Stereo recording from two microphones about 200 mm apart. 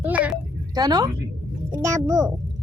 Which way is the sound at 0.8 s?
20° right (ahead or behind).